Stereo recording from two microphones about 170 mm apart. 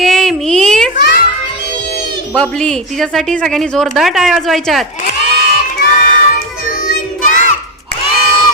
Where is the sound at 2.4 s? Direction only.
5° left (ahead or behind).